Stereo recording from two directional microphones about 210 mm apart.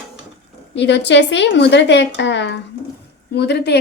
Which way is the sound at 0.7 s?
55° left (ahead or behind).